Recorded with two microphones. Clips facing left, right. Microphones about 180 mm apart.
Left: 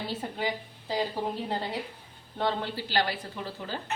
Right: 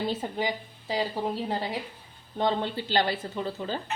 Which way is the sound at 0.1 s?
15° right (ahead or behind).